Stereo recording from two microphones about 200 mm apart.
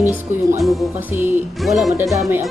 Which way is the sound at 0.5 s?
Centre (ahead or behind).